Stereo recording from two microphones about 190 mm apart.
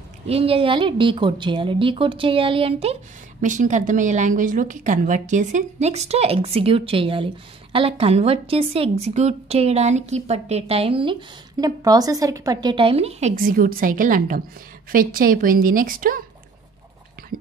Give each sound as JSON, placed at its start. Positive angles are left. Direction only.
{"t": 0.3, "sound": "a woman's voice", "side_deg": -30}
{"t": 13.4, "sound": "a woman's voice", "side_deg": -45}